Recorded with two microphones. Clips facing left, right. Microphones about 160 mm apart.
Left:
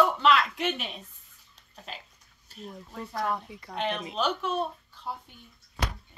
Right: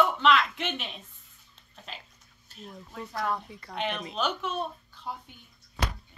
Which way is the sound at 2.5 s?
Centre (ahead or behind).